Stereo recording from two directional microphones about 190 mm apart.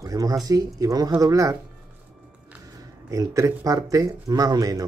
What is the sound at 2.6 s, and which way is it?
Speech, 20° right (ahead or behind).